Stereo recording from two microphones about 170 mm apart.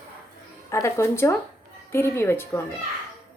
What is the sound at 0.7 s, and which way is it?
Speech, 15° left (ahead or behind).